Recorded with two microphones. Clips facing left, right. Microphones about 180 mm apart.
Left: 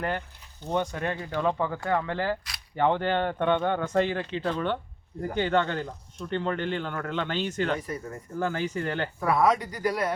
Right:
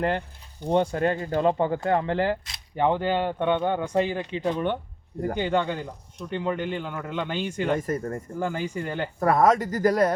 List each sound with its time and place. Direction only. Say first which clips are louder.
0.7 s speech: right 6 dB; 30° right (ahead or behind)
1.1 s speech: right 6 dB; 45° right (ahead or behind)
1.4 s speech: right 4 dB; 30° right (ahead or behind)
2.8 s speech: right 1 dB; 10° right (ahead or behind)
7.8 s speech: right 7 dB; 50° right (ahead or behind)
8.4 s speech: left 1 dB; 15° right (ahead or behind)
9.2 s speech: right 4 dB; 45° right (ahead or behind)